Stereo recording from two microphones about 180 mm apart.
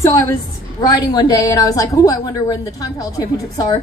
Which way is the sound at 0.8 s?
20° left (ahead or behind).